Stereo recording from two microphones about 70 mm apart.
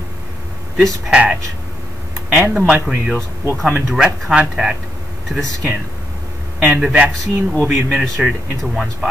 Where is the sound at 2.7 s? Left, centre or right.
Centre.